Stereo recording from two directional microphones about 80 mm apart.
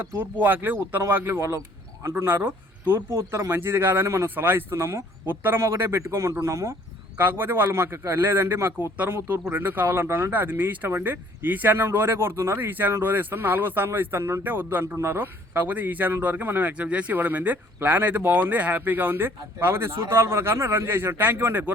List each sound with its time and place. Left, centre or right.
0.0 s speech: right
7.2 s speech: right